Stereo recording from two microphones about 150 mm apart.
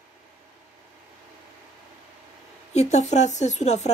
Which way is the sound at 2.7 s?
50° left (ahead or behind).